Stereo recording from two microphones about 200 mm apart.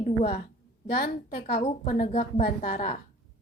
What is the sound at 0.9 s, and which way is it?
A woman's voice, 50° left (ahead or behind).